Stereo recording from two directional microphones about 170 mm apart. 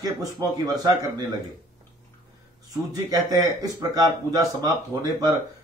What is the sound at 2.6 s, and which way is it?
Speech, 20° right (ahead or behind).